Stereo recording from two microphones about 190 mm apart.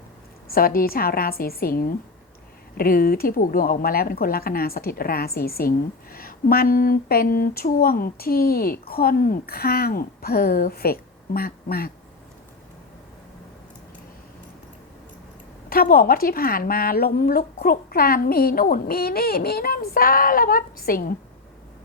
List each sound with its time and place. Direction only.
0.4 s a woman's voice: 50° left (ahead or behind)
15.7 s a woman's voice: 50° left (ahead or behind)